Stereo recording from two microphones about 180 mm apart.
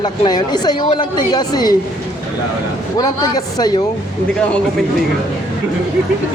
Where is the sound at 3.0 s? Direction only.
20° left (ahead or behind).